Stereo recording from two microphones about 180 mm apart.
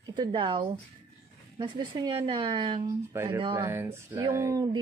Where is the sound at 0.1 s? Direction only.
25° right (ahead or behind).